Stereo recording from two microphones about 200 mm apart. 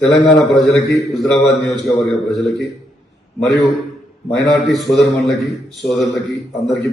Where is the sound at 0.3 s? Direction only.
Centre (ahead or behind).